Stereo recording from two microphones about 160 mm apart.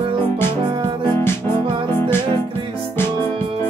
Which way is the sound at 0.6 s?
30° right (ahead or behind).